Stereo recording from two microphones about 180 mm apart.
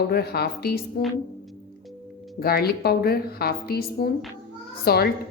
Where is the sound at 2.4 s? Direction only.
60° left (ahead or behind).